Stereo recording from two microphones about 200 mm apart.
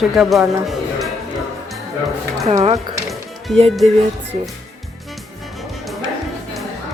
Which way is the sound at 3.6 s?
Centre (ahead or behind).